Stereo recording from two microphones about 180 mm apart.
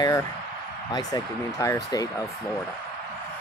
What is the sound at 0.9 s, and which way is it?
Speech, 20° left (ahead or behind).